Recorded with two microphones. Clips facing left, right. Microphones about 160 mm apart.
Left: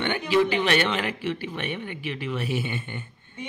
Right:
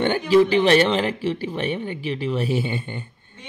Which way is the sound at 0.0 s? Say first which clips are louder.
Right 6 dB; 35° right (ahead or behind).